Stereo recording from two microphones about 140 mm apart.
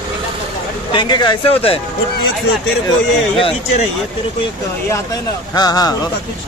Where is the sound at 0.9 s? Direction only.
30° left (ahead or behind).